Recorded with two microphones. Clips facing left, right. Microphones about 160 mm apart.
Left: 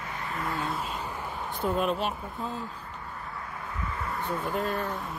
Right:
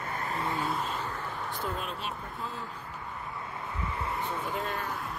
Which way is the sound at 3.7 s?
25° right (ahead or behind).